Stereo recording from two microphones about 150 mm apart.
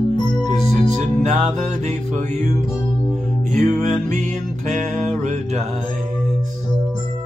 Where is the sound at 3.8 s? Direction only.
55° right (ahead or behind).